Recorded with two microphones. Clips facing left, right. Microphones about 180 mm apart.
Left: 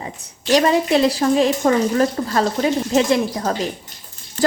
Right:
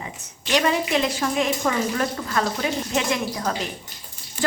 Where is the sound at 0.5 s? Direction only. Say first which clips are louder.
Left 6 dB; 35° left (ahead or behind).